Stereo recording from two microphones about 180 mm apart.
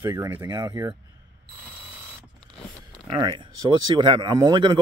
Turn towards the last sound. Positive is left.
turn(degrees=-25)  # may be behind; listen again after turning